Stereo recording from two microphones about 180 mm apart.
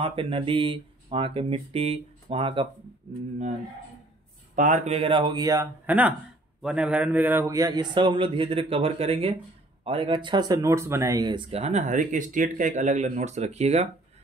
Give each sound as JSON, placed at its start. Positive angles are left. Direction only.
{"t": 0.0, "sound": "speech", "side_deg": -30}
{"t": 4.6, "sound": "speech", "side_deg": -40}
{"t": 5.9, "sound": "a man's voice", "side_deg": -10}